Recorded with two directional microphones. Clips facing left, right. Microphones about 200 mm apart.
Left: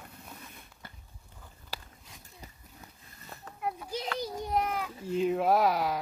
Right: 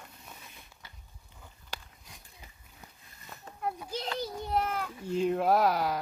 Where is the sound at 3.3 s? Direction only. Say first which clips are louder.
Left 2 dB; 35° left (ahead or behind).